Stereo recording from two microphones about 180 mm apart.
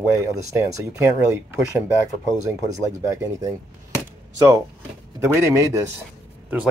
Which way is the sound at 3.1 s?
15° right (ahead or behind).